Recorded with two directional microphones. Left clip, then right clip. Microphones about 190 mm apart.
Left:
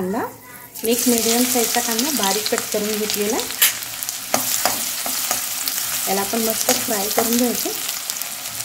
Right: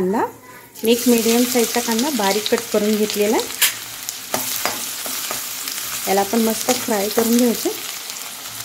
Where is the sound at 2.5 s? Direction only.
40° right (ahead or behind).